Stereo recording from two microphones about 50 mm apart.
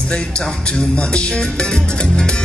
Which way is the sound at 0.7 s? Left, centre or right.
Left.